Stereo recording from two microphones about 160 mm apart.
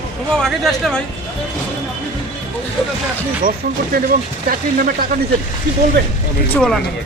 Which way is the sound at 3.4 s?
60° right (ahead or behind).